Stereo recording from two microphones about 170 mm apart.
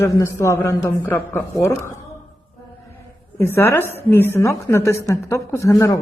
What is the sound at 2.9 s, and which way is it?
A woman's voice, 15° left (ahead or behind).